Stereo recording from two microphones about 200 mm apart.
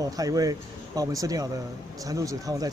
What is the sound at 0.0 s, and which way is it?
Speech, 15° right (ahead or behind).